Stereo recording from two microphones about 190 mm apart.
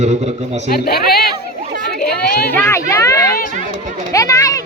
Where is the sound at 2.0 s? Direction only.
55° left (ahead or behind).